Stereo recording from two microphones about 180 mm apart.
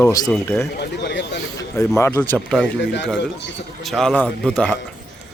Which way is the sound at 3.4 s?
80° left.